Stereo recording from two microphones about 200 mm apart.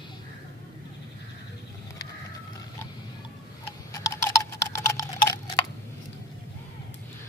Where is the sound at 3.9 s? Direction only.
15° left (ahead or behind).